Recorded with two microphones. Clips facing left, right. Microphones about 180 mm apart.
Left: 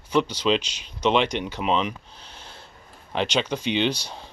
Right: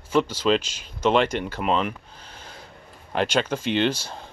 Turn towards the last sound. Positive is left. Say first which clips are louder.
# right 1 dB
turn(degrees=-5)  # may be behind; listen again after turning